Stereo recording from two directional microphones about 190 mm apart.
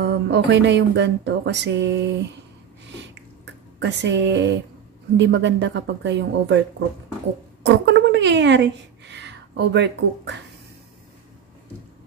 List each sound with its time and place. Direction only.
0.0 s speech: 65° right (ahead or behind)
3.8 s speech: 70° right (ahead or behind)
7.6 s speech: 70° right (ahead or behind)